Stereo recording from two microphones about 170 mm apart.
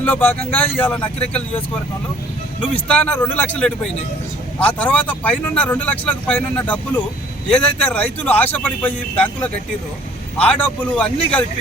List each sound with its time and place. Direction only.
0.0 s speech: 10° left (ahead or behind)
2.7 s speech: 5° left (ahead or behind)